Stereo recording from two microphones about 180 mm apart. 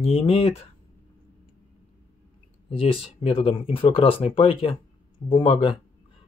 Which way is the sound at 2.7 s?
30° left (ahead or behind).